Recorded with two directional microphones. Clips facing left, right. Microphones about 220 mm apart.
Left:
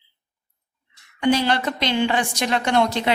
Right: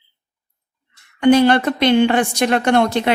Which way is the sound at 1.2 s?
55° right (ahead or behind).